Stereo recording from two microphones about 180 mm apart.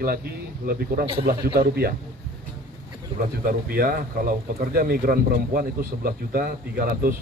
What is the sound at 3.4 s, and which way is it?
A man's voice, 55° right (ahead or behind).